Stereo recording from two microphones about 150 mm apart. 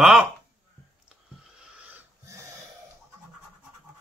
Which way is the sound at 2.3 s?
20° right (ahead or behind).